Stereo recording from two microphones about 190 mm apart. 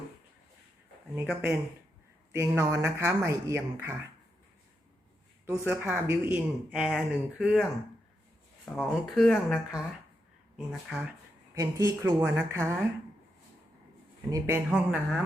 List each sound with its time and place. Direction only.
1.1 s speech: 10° right (ahead or behind)
5.5 s speech: 10° right (ahead or behind)
8.7 s speech: centre (ahead or behind)
11.5 s speech: 15° right (ahead or behind)
14.3 s speech: 15° right (ahead or behind)